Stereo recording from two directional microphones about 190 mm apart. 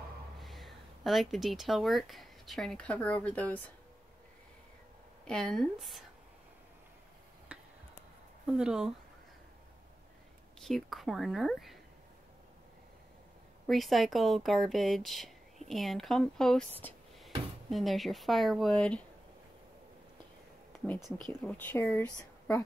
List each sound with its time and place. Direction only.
0.4 s speech: centre (ahead or behind)
5.2 s speech: 5° left (ahead or behind)
7.5 s a sound: 10° right (ahead or behind)
8.5 s speech: 5° right (ahead or behind)
10.6 s speech: centre (ahead or behind)
13.7 s speech: centre (ahead or behind)
21.3 s speech: 10° left (ahead or behind)